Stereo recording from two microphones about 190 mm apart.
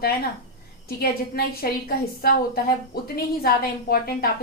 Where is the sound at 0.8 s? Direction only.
55° left (ahead or behind).